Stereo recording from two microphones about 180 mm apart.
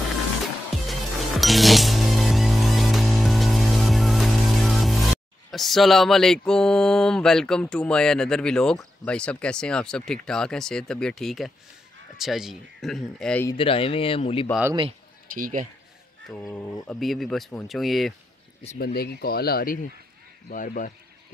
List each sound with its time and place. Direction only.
0.8 s music: centre (ahead or behind)
5.5 s mantra: centre (ahead or behind)
13.5 s speech: 30° left (ahead or behind)
15.3 s speech: 50° right (ahead or behind)
16.3 s mantra: 10° left (ahead or behind)
18.9 s speech: 60° left (ahead or behind)